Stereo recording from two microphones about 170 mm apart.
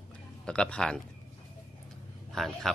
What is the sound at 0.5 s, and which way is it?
Speech, 5° left (ahead or behind).